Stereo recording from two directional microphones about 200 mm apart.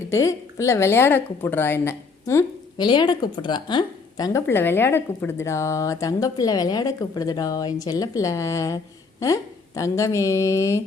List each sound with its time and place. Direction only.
0.1 s a woman's voice: 15° left (ahead or behind)